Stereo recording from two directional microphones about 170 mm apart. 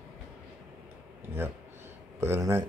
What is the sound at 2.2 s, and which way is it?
Speech, 15° right (ahead or behind).